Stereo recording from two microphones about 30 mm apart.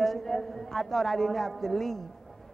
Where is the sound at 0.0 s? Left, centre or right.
Centre.